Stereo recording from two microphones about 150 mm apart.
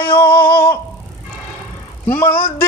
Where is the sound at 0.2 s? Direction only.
75° left (ahead or behind).